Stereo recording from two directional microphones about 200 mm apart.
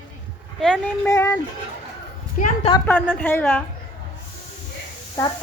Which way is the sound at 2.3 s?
40° left (ahead or behind).